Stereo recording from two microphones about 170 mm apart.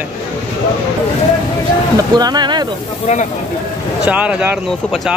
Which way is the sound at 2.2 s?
25° right (ahead or behind).